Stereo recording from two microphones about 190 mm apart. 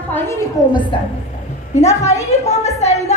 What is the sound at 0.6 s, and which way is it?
Speech, 15° left (ahead or behind).